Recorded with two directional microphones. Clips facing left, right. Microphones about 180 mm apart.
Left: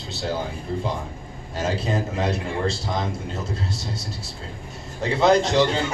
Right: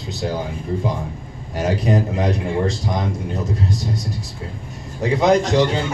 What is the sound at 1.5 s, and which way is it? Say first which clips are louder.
A man's voice: right 5 dB; 15° right (ahead or behind).